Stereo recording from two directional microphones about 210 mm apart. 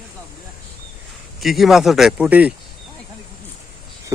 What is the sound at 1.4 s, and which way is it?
Speech, centre (ahead or behind).